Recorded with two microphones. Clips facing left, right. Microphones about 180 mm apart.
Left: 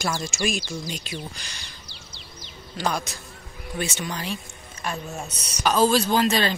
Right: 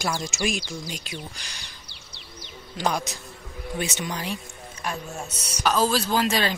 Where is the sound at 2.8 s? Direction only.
15° right (ahead or behind).